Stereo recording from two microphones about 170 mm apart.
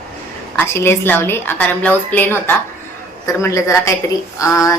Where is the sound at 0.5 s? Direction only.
15° left (ahead or behind).